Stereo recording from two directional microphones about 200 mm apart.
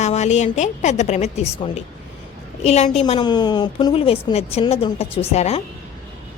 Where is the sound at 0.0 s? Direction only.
35° left (ahead or behind).